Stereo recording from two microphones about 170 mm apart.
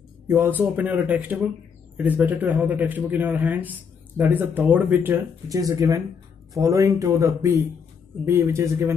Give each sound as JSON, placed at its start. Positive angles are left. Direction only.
{"t": 0.3, "sound": "speech", "side_deg": -10}